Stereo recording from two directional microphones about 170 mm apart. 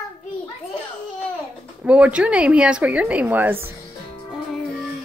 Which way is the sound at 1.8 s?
5° right (ahead or behind).